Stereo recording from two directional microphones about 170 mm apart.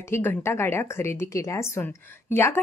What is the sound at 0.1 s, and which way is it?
A woman's voice, 15° left (ahead or behind).